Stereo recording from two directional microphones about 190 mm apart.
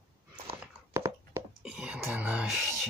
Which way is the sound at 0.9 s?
15° right (ahead or behind).